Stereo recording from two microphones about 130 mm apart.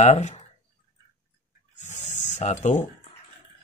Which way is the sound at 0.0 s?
60° left (ahead or behind).